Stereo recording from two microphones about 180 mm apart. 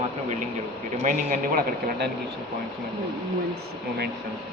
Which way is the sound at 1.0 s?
50° right (ahead or behind).